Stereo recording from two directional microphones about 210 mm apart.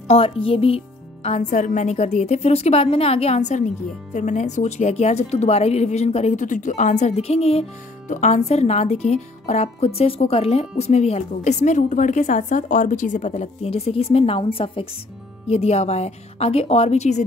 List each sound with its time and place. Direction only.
0.1 s a woman's voice: 30° left (ahead or behind)